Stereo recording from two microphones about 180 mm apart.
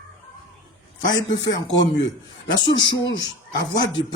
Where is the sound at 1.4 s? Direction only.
90° left.